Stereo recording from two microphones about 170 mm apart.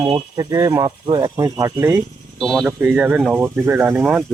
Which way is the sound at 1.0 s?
30° right (ahead or behind).